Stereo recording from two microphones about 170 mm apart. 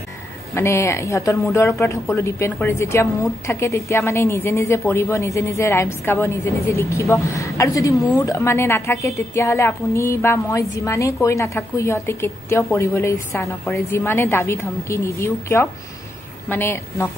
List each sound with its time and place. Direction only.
0.6 s a woman's voice: 15° left (ahead or behind)